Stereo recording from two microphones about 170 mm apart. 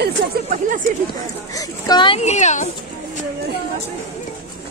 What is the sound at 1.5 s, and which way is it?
Speech, 20° left (ahead or behind).